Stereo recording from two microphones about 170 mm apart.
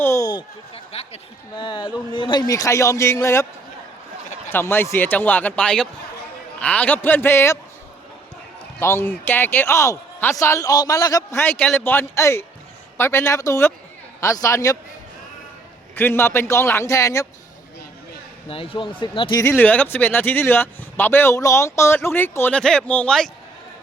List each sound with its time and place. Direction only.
0.0 s a sound: 20° left (ahead or behind)
0.7 s speech: 35° left (ahead or behind); by 3.4 s 15° left (ahead or behind)
4.4 s speech: 15° left (ahead or behind)
8.8 s speech: 15° left (ahead or behind)
16.0 s speech: 15° left (ahead or behind)
18.4 s speech: 35° left (ahead or behind)
19.4 s speech: 10° left (ahead or behind)